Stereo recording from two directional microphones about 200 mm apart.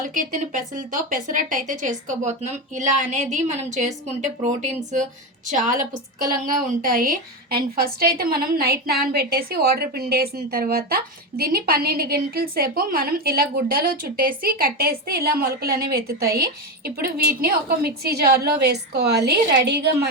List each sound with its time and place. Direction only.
0.0 s a woman's voice: 40° right (ahead or behind)